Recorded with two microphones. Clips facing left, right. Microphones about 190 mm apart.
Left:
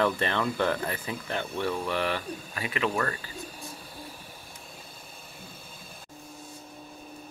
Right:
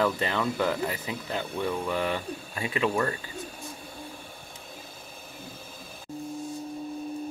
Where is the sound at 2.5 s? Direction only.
25° right (ahead or behind).